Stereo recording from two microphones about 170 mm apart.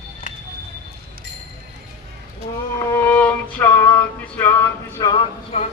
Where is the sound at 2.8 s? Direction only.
15° left (ahead or behind).